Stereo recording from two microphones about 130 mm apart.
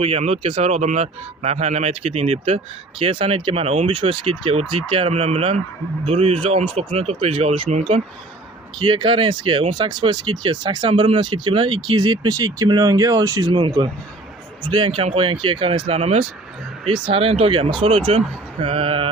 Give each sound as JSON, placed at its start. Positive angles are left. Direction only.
{"t": 0.0, "sound": "speech", "side_deg": -50}
{"t": 7.7, "sound": "speech", "side_deg": -60}
{"t": 8.8, "sound": "speech", "side_deg": -40}
{"t": 16.0, "sound": "speech", "side_deg": -55}